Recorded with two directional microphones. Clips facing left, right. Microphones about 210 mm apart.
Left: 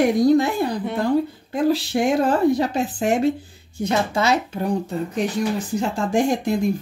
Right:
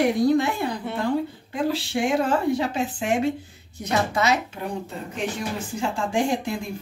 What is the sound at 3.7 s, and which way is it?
Speech, 30° left (ahead or behind).